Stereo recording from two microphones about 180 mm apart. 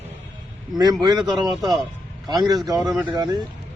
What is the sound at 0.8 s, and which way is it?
Speech, 20° right (ahead or behind).